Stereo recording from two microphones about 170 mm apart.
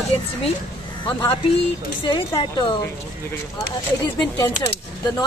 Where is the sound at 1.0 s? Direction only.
30° left (ahead or behind).